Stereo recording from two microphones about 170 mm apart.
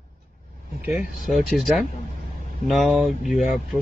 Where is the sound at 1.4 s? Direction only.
Centre (ahead or behind).